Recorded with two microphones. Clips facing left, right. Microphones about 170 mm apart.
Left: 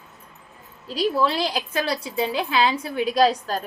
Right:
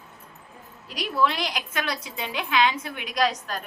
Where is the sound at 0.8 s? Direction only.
30° left (ahead or behind).